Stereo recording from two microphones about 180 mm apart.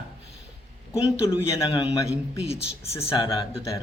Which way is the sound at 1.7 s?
20° left (ahead or behind).